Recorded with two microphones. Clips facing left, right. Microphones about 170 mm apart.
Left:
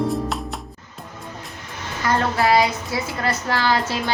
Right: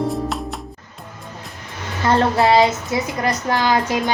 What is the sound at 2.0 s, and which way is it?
Speech, 25° right (ahead or behind).